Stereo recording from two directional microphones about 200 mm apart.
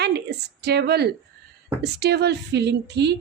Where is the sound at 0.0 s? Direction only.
55° right (ahead or behind).